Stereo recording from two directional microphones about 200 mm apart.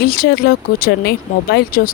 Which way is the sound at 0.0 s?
50° left (ahead or behind).